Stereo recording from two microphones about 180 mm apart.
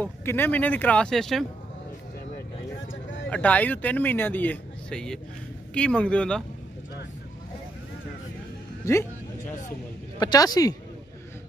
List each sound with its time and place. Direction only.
0.0 s speech: 10° left (ahead or behind)
2.9 s a sound: 90° left
3.3 s speech: 10° left (ahead or behind)
8.8 s speech: 15° left (ahead or behind)
10.1 s speech: 20° left (ahead or behind)